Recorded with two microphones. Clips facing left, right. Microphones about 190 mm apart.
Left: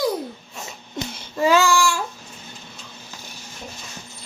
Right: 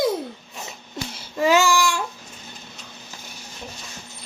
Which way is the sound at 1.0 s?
Centre (ahead or behind).